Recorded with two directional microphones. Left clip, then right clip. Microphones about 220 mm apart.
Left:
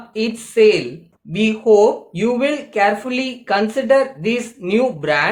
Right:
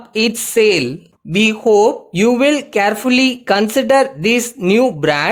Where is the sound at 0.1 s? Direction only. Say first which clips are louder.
Right 6 dB; 50° right (ahead or behind).